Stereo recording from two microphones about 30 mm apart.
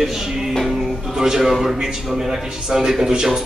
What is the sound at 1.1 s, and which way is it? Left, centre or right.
A man's voice, centre.